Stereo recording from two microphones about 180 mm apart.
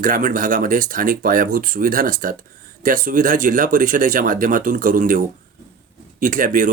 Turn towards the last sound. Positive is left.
turn(degrees=-50)  # may be behind; listen again after turning